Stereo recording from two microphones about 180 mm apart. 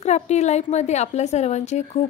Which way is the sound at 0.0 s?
40° left (ahead or behind).